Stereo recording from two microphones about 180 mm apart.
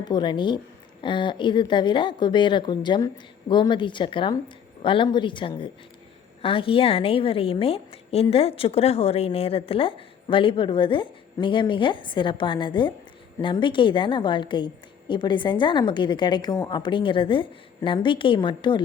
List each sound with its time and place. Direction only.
0.0 s a woman's voice: 25° left (ahead or behind)